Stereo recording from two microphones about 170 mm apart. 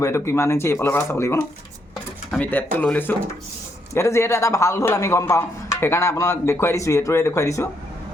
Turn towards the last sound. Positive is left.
turn(degrees=15)  # may be behind; listen again after turning